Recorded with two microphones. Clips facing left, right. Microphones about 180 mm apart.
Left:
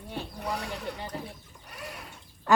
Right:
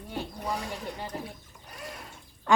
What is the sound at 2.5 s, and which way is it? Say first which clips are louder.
Duck: left 1 dB; 5° left (ahead or behind).